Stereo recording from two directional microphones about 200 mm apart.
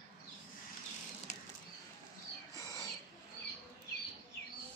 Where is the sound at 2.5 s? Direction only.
15° left (ahead or behind).